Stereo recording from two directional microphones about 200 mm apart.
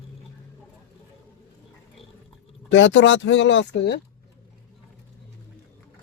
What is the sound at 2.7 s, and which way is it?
Speech, 70° left (ahead or behind).